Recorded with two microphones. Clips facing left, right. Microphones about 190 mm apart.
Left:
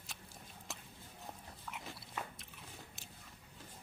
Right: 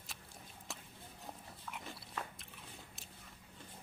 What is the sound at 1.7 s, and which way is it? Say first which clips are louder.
Biting: even; centre (ahead or behind).